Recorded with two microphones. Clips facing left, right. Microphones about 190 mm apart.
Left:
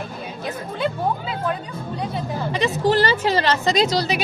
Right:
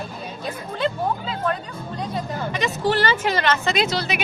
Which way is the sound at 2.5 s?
35° left (ahead or behind).